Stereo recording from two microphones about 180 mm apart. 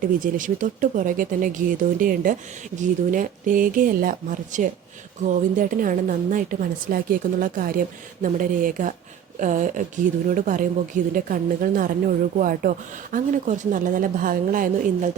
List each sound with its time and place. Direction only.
0.0 s a woman's voice: 45° right (ahead or behind)